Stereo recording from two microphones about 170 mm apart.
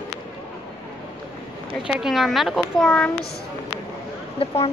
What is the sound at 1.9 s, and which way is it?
A woman's voice, centre (ahead or behind).